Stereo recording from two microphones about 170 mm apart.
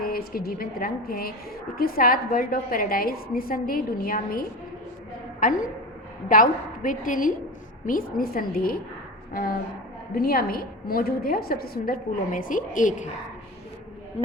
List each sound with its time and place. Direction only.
0.0 s a woman's voice: 60° left (ahead or behind)